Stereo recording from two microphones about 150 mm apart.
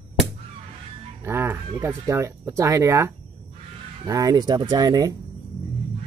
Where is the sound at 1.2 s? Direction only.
15° right (ahead or behind).